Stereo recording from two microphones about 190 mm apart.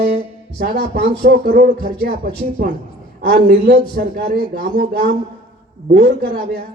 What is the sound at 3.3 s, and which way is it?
Speech, 45° right (ahead or behind).